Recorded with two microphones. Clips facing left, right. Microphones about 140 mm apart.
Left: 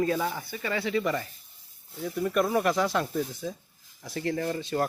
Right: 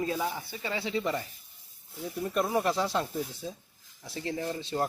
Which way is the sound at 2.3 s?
20° right (ahead or behind).